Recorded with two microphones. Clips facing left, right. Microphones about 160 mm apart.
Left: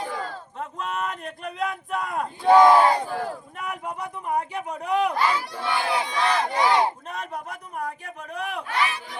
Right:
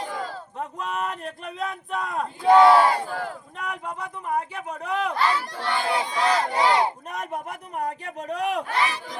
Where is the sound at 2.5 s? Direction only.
15° left (ahead or behind).